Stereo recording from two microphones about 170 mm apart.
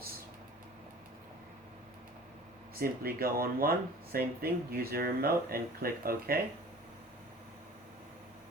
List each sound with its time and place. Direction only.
2.7 s speech: 60° right (ahead or behind)